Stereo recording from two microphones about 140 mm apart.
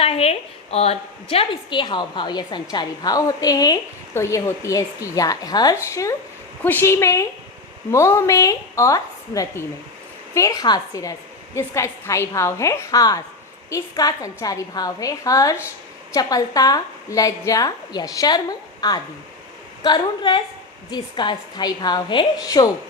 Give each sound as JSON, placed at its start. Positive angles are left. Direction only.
{"t": 0.0, "sound": "a woman's voice", "side_deg": 45}